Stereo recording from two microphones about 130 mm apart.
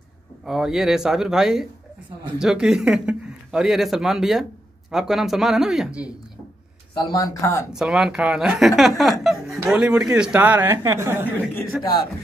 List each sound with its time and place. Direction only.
0.5 s a man's voice: 5° right (ahead or behind)
6.9 s a sound: 40° left (ahead or behind)
7.2 s speech: 25° left (ahead or behind)
7.7 s a man's voice: 5° right (ahead or behind)
9.2 s chuckle: centre (ahead or behind)
9.7 s a man's voice: 5° right (ahead or behind)
11.7 s a man's voice: 5° right (ahead or behind)